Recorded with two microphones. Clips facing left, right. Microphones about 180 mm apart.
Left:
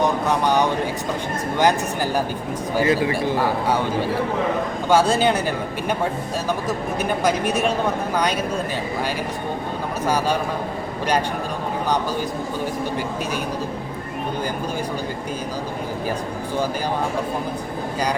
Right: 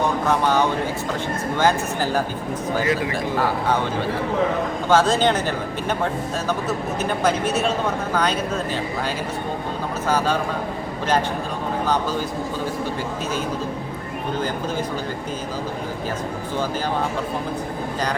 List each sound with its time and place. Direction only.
0.4 s speech: 15° left (ahead or behind)
2.8 s speech: 30° left (ahead or behind)
4.9 s speech: 10° left (ahead or behind)
6.7 s speech: 15° left (ahead or behind)
10.1 s speech: 10° left (ahead or behind)